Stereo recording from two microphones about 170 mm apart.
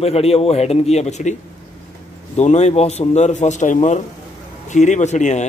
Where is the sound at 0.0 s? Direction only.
35° left (ahead or behind).